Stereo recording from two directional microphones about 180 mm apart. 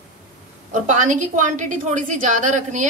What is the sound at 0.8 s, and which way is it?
A woman's voice, 45° right (ahead or behind).